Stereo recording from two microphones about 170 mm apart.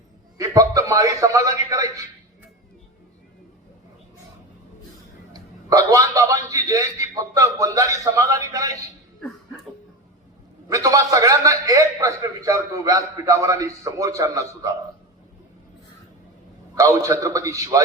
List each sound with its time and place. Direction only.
0.3 s a man's voice: 20° right (ahead or behind)
5.3 s a man's voice: 20° right (ahead or behind)
10.7 s a man's voice: 20° right (ahead or behind)
16.7 s a man's voice: 20° right (ahead or behind)